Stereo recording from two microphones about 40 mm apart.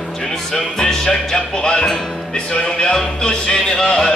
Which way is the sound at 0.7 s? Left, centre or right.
Centre.